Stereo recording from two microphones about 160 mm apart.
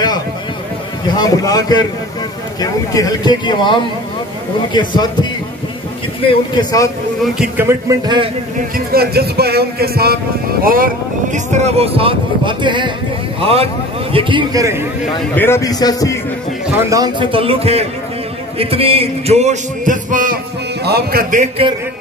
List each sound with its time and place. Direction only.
1.0 s speech: 25° left (ahead or behind)
7.3 s speech: 15° right (ahead or behind)
8.5 s speech: 70° right (ahead or behind)
10.6 s speech: 60° right (ahead or behind)
11.3 s speech: 45° right (ahead or behind)
14.1 s a man's voice: 25° right (ahead or behind)
15.3 s speech: 15° left (ahead or behind)
16.7 s speech: 20° right (ahead or behind); by 17.8 s 35° right (ahead or behind)
18.6 s music: 35° right (ahead or behind); by 20.3 s 55° right (ahead or behind)
20.8 s speech: 75° right (ahead or behind); by 21.5 s 60° right (ahead or behind)